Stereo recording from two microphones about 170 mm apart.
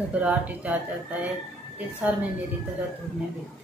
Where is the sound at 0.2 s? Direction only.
10° right (ahead or behind).